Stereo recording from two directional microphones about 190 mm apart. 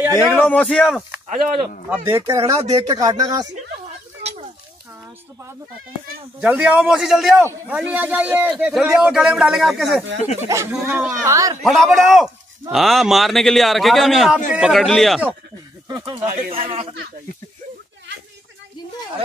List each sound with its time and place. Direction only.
0.1 s speech: 10° left (ahead or behind)
1.2 s speech: 35° right (ahead or behind)
1.9 s speech: 15° right (ahead or behind)
4.2 s a sound: 30° right (ahead or behind)
6.4 s a man's voice: 5° right (ahead or behind)
10.5 s speech: 10° right (ahead or behind)
11.6 s a man's voice: centre (ahead or behind)
15.9 s speech: 25° right (ahead or behind)
16.3 s speech: 45° right (ahead or behind)